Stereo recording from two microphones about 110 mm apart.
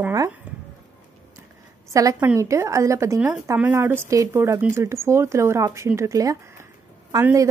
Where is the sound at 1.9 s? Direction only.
30° right (ahead or behind).